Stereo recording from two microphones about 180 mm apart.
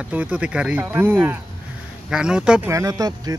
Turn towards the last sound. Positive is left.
turn(degrees=-20)  # may be behind; listen again after turning